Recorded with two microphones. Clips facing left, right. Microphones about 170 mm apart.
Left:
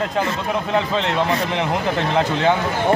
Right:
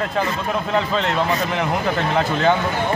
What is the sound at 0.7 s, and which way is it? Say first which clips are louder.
A man's voice: even; 20° left (ahead or behind).